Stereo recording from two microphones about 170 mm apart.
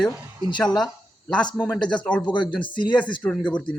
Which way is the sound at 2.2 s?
25° left (ahead or behind).